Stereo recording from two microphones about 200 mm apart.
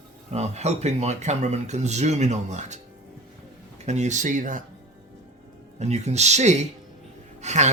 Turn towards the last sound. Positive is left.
turn(degrees=-35)  # may be behind; listen again after turning